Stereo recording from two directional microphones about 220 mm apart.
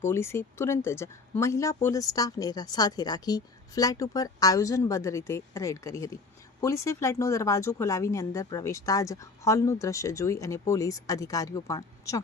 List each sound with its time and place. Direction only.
0.0 s speech: 10° left (ahead or behind)